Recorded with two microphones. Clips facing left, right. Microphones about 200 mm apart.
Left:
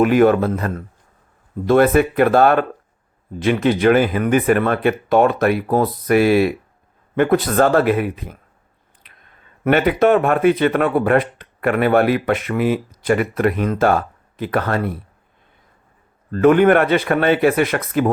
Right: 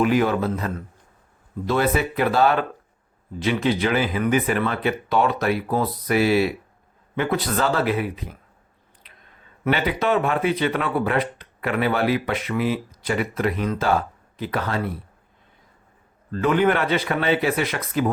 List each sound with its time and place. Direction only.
0.0 s speech: 55° left (ahead or behind)
9.6 s speech: 55° left (ahead or behind)
16.3 s speech: 55° left (ahead or behind)